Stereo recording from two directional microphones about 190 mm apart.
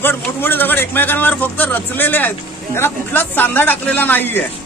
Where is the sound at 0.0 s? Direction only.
10° left (ahead or behind).